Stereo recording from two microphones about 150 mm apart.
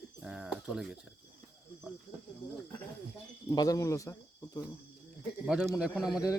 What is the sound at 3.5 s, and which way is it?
Speech, 25° left (ahead or behind).